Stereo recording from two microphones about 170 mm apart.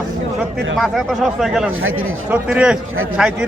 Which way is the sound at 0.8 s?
Centre (ahead or behind).